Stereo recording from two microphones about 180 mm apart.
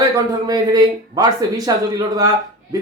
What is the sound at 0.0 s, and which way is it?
Speech, 20° right (ahead or behind).